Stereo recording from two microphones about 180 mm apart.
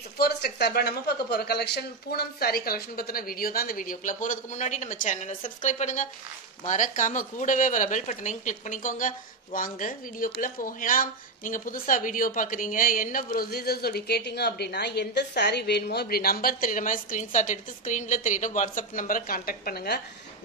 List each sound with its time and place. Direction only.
0.2 s a woman's voice: 60° left (ahead or behind)